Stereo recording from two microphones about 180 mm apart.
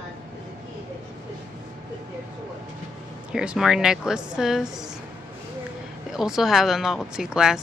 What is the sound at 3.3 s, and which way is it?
Speech, 5° right (ahead or behind).